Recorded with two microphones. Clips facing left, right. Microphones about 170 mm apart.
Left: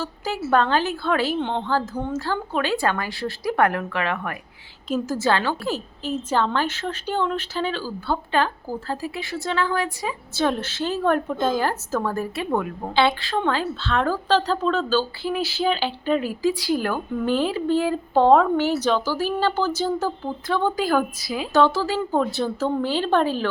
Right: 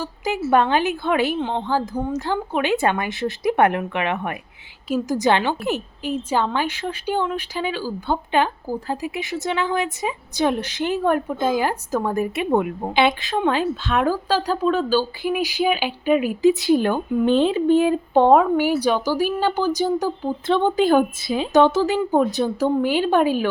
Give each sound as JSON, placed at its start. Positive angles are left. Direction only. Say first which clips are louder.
{"t": 0.0, "sound": "speech", "louder": "right 3 dB", "side_deg": -15}
{"t": 1.4, "sound": "speech", "louder": "right 1 dB", "side_deg": -5}